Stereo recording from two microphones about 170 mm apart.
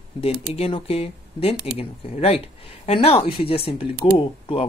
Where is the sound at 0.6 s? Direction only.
35° left (ahead or behind).